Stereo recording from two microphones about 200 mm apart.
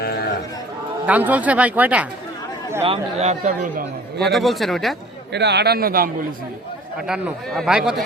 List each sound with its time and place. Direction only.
0.0 s a sound: 50° left (ahead or behind)
1.0 s speech: 10° right (ahead or behind)
2.8 s speech: 30° right (ahead or behind)
4.2 s speech: centre (ahead or behind)
5.3 s a man's voice: 55° right (ahead or behind)
7.1 s speech: centre (ahead or behind)